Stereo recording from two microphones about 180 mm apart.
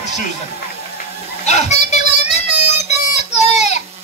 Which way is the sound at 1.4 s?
40° left (ahead or behind).